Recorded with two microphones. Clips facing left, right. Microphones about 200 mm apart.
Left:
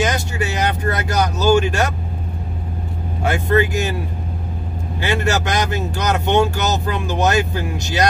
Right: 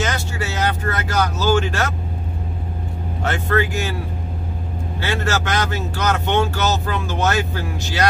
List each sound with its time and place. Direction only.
0.0 s vehicle: 15° left (ahead or behind)
3.3 s speech: 15° left (ahead or behind)
5.0 s speech: 15° left (ahead or behind)